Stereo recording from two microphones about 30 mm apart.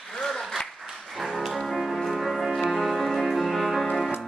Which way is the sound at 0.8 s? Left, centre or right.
Centre.